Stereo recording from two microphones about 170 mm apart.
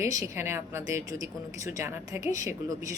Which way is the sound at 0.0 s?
20° right (ahead or behind).